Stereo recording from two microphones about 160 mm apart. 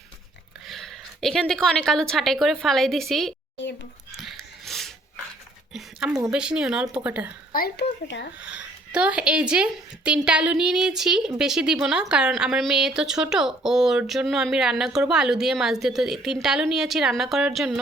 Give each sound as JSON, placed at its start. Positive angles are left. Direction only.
{"t": 0.7, "sound": "a woman's voice", "side_deg": 0}
{"t": 4.2, "sound": "a sound", "side_deg": 0}
{"t": 6.3, "sound": "a woman's voice", "side_deg": -5}
{"t": 7.5, "sound": "speech", "side_deg": 80}
{"t": 8.4, "sound": "a woman's voice", "side_deg": -5}